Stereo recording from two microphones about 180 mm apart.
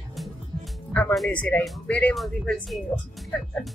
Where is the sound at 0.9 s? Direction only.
10° left (ahead or behind).